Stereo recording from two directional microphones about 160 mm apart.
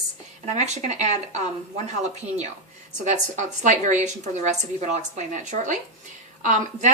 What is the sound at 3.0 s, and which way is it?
A woman's voice, 50° right (ahead or behind).